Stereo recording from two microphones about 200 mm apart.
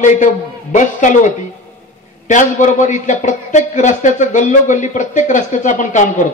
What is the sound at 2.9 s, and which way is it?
A woman's voice, 35° left (ahead or behind).